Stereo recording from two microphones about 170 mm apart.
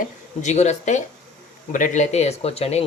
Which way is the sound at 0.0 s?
45° left (ahead or behind).